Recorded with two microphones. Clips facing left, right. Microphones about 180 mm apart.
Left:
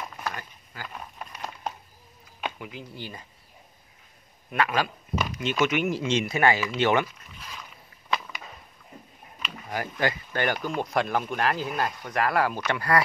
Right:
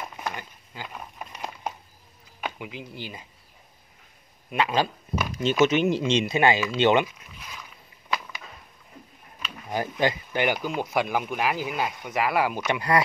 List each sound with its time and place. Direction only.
0.2 s a sound: 20° right (ahead or behind)
2.4 s speech: 15° right (ahead or behind)
4.5 s speech: 20° right (ahead or behind)
9.7 s speech: 20° right (ahead or behind)